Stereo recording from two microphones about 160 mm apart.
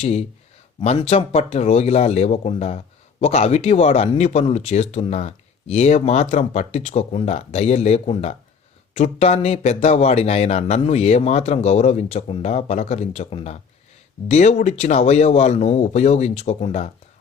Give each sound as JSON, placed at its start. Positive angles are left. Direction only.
{"t": 0.0, "sound": "speech", "side_deg": 40}